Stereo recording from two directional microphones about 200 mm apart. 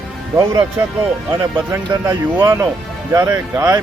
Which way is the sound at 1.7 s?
15° right (ahead or behind).